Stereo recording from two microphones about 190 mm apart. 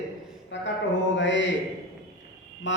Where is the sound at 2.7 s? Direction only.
75° left (ahead or behind).